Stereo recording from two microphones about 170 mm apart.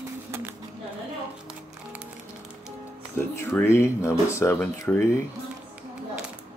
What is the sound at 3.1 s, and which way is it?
Speech, 15° left (ahead or behind).